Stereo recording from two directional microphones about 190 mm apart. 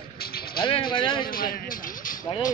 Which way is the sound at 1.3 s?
50° left (ahead or behind).